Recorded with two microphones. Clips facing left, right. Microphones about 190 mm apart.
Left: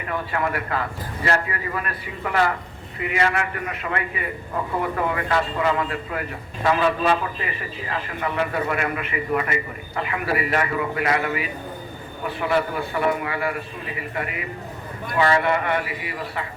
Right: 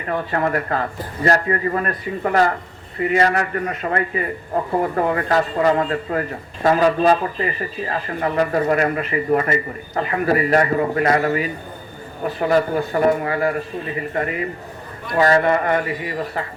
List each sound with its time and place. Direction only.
0.1 s a man's voice: 40° right (ahead or behind)